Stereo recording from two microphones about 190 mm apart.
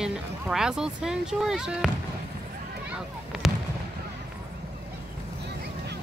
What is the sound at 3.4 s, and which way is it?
Fireworks, centre (ahead or behind).